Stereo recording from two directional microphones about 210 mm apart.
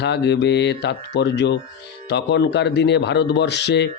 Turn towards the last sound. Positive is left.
turn(degrees=55)  # may be behind; listen again after turning